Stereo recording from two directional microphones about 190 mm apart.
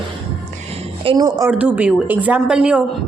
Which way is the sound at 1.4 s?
10° right (ahead or behind).